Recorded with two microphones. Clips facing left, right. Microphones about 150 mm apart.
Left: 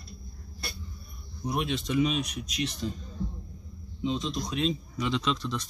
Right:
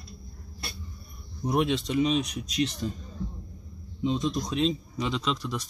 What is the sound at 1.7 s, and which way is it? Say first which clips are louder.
Speech: right 2 dB; 35° right (ahead or behind).